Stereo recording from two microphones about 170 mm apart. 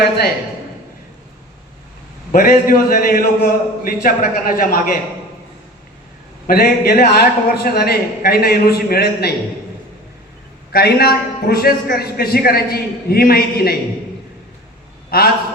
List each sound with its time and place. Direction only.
2.3 s a man's voice: 55° left (ahead or behind)
6.5 s a man's voice: 65° left (ahead or behind)
10.7 s a man's voice: 65° left (ahead or behind)
15.1 s a man's voice: 60° left (ahead or behind)